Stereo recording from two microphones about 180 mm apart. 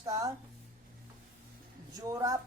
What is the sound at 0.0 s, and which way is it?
Speech, 20° right (ahead or behind).